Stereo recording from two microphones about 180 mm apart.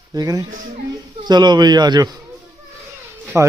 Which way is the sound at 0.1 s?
20° right (ahead or behind).